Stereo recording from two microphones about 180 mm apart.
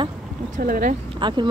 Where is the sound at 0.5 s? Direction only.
50° right (ahead or behind).